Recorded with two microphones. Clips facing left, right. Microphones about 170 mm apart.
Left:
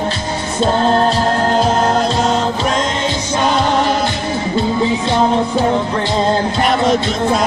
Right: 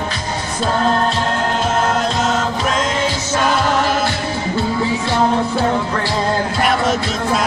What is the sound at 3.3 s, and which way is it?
Music, 20° left (ahead or behind).